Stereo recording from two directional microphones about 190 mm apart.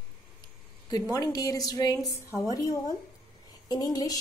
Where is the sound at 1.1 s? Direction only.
20° left (ahead or behind).